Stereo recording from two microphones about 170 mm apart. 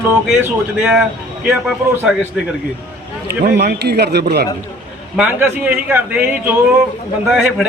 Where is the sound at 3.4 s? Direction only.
75° right (ahead or behind).